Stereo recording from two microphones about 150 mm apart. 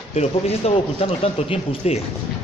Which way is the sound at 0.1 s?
45° left (ahead or behind).